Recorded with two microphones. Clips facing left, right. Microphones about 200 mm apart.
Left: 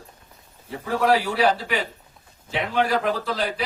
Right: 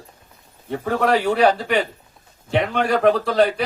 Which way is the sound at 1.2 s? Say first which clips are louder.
Right 5 dB; 50° right (ahead or behind).